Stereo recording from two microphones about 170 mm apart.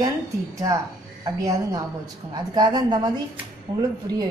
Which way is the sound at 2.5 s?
25° right (ahead or behind).